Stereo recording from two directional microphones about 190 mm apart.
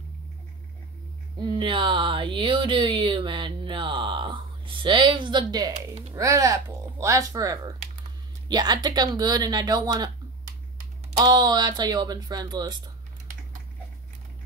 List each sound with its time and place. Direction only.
1.4 s speech: 25° right (ahead or behind)
11.1 s speech: 20° right (ahead or behind)